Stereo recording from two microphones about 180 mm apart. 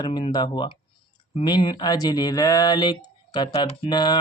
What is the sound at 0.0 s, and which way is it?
Mantra, 25° left (ahead or behind).